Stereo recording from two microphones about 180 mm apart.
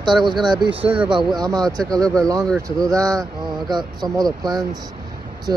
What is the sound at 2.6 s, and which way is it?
Speech, 20° right (ahead or behind).